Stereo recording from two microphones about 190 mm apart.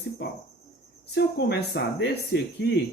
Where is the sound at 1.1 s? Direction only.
60° left (ahead or behind).